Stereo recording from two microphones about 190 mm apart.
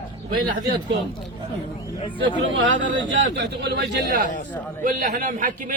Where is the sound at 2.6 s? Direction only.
70° right (ahead or behind).